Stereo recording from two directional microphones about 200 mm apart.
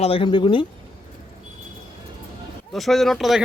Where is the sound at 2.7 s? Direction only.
Centre (ahead or behind).